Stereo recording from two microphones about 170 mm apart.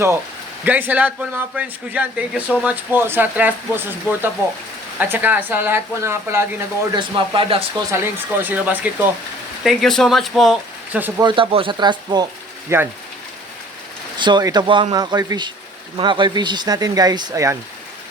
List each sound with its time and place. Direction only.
0.6 s a man's voice: 10° right (ahead or behind)
6.9 s speech: 30° right (ahead or behind)
7.9 s a man's voice: 15° right (ahead or behind)
9.6 s speech: centre (ahead or behind)
11.2 s speech: 30° right (ahead or behind)
12.7 s a man's voice: 15° right (ahead or behind)
14.2 s speech: 25° right (ahead or behind)